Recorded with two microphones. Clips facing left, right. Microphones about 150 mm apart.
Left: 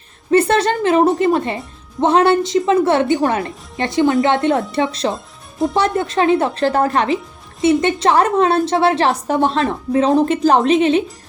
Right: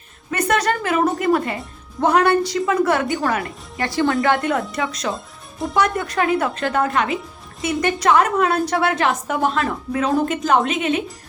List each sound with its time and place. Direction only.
0.3 s speech: 30° left (ahead or behind)
5.1 s music: centre (ahead or behind)
5.7 s speech: 30° left (ahead or behind)